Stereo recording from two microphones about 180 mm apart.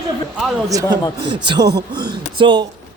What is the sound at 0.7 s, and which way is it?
Speech, 20° right (ahead or behind).